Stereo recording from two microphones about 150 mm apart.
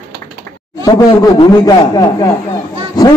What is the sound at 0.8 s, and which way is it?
Speech, 25° left (ahead or behind).